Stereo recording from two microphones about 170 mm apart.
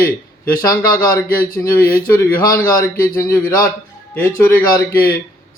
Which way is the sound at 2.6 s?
55° left (ahead or behind).